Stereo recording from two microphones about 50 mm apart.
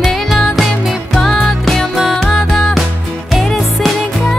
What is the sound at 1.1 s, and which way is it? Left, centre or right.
Music, centre.